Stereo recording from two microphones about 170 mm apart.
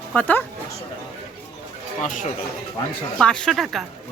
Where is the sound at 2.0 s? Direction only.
50° left (ahead or behind).